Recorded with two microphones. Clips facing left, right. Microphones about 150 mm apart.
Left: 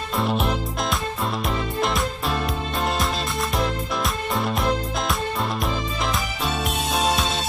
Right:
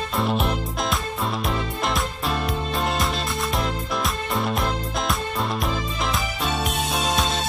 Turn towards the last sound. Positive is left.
turn(degrees=0)  # may be behind; listen again after turning